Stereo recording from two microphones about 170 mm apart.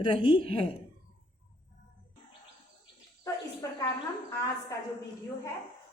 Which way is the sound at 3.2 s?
20° left (ahead or behind).